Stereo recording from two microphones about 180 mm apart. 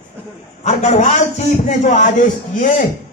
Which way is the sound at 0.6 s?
40° left (ahead or behind).